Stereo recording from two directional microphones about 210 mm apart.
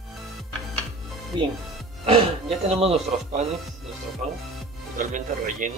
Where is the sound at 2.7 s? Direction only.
30° right (ahead or behind).